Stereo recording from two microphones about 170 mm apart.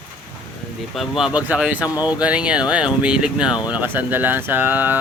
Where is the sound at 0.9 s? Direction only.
5° right (ahead or behind).